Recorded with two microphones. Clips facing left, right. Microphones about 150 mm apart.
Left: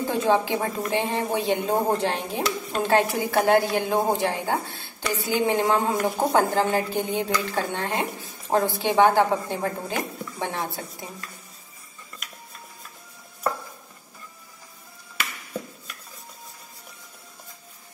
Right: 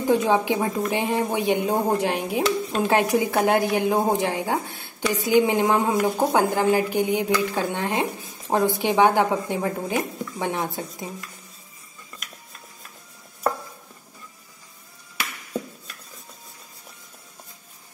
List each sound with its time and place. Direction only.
0.1 s speech: 15° right (ahead or behind)